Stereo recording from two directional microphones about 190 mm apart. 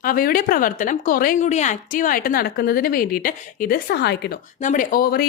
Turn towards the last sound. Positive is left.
turn(degrees=50)  # may be behind; listen again after turning